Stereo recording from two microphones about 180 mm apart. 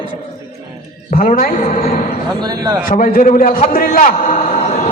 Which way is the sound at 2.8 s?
50° left (ahead or behind).